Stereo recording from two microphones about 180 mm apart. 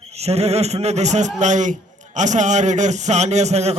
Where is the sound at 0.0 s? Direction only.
35° right (ahead or behind).